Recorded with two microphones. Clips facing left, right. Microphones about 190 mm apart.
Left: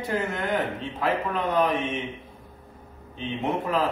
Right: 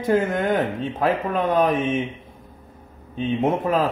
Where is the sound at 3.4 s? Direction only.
45° right (ahead or behind).